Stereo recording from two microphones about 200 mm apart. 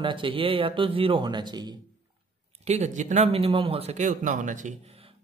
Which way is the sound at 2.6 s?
35° right (ahead or behind).